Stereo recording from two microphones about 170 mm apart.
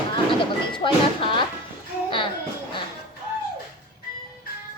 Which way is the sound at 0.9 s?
30° left (ahead or behind).